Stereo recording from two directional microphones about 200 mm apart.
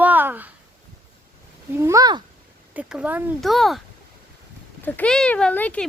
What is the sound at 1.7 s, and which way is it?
Speech, 15° right (ahead or behind).